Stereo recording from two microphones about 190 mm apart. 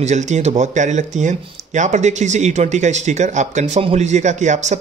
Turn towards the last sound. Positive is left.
turn(degrees=-40)  # may be behind; listen again after turning